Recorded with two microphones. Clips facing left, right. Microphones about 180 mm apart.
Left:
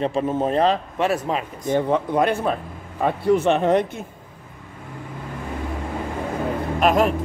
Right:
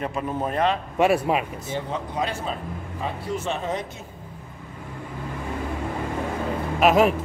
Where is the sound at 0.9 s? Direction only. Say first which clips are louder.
Right 2 dB; 10° right (ahead or behind).